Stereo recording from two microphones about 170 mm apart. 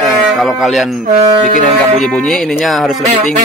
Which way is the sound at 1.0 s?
50° right (ahead or behind).